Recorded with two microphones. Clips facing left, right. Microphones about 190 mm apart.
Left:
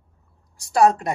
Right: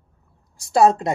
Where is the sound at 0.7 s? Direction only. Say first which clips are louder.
Right 1 dB; 25° right (ahead or behind).